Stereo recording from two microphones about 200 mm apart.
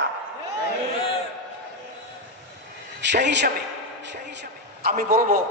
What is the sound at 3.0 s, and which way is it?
Speech, 60° right (ahead or behind).